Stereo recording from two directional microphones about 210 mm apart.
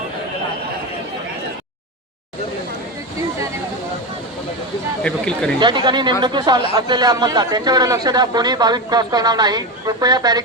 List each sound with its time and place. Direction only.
5.0 s speech: 5° left (ahead or behind)
5.5 s a man's voice: 20° right (ahead or behind)